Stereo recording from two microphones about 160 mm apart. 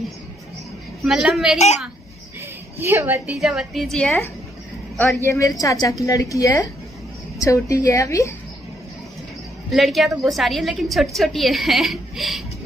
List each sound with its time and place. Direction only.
1.0 s a woman's voice: centre (ahead or behind)
2.8 s a woman's voice: 15° right (ahead or behind)
3.3 s a woman's voice: centre (ahead or behind)
4.9 s a woman's voice: 15° left (ahead or behind)
9.7 s a woman's voice: centre (ahead or behind)